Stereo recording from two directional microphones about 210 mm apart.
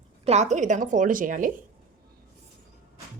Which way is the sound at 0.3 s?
35° right (ahead or behind).